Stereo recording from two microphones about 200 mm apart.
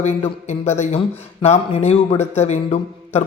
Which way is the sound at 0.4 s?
35° left (ahead or behind).